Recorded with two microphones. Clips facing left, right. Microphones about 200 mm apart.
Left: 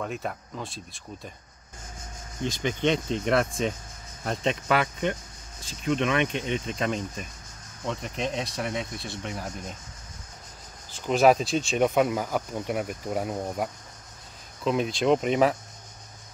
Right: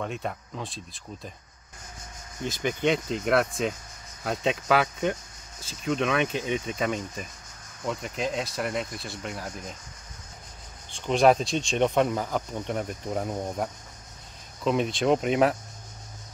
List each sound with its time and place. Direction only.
0.0 s speech: centre (ahead or behind)
2.4 s speech: 5° right (ahead or behind)
5.6 s speech: 5° right (ahead or behind)
10.9 s speech: 5° left (ahead or behind)